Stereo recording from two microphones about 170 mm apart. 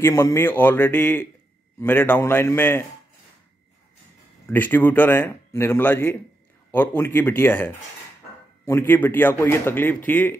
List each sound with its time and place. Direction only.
0.0 s a man's voice: 15° left (ahead or behind)
4.5 s a man's voice: 10° left (ahead or behind)